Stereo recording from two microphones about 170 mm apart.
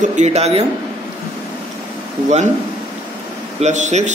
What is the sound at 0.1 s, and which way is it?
Speech, 40° right (ahead or behind).